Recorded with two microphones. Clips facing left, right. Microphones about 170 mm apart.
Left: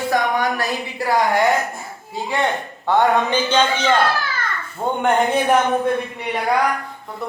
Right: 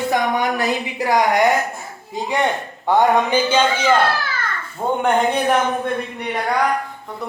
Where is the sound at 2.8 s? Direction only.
10° right (ahead or behind).